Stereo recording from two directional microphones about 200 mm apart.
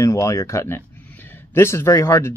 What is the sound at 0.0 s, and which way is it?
Speech, 15° left (ahead or behind).